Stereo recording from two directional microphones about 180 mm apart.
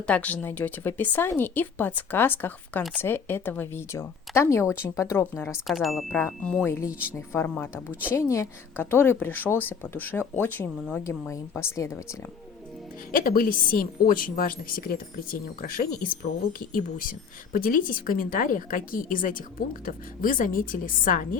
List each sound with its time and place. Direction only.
0.0 s speech: 5° left (ahead or behind)
5.6 s speech: centre (ahead or behind); by 12.0 s 15° left (ahead or behind)
13.1 s speech: 50° left (ahead or behind)